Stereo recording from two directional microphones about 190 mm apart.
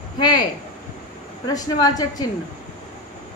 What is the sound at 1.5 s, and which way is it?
Speech, 20° left (ahead or behind).